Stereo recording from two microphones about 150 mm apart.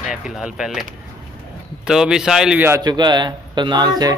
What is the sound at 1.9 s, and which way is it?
Speech, 5° right (ahead or behind).